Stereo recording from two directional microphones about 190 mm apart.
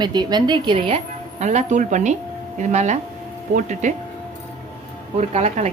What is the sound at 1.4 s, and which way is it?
Speech, 40° right (ahead or behind).